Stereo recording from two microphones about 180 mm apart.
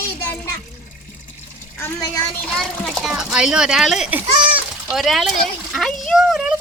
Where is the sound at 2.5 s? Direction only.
Centre (ahead or behind).